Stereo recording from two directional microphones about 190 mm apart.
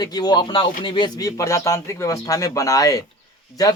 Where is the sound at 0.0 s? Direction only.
20° left (ahead or behind).